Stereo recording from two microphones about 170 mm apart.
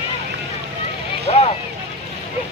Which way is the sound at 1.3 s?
35° left (ahead or behind).